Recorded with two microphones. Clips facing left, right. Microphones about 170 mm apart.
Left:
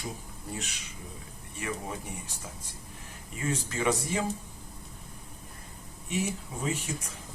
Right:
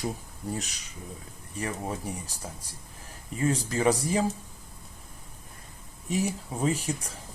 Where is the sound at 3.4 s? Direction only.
35° right (ahead or behind).